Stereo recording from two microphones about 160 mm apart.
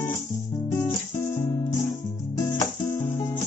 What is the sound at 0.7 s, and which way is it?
Music, 15° left (ahead or behind).